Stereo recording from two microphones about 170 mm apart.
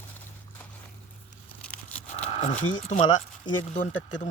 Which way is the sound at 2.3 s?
45° left (ahead or behind).